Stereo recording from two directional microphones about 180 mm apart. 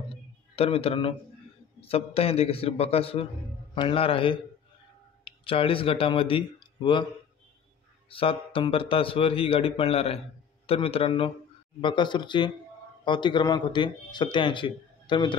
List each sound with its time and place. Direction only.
0.6 s a man's voice: 30° left (ahead or behind)
8.1 s a man's voice: 30° left (ahead or behind)